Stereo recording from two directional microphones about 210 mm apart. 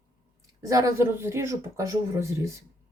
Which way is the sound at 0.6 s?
15° right (ahead or behind).